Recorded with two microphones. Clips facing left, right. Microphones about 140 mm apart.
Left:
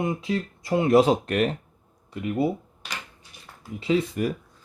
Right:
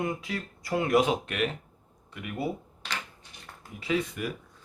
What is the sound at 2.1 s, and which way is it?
Speech, 30° left (ahead or behind).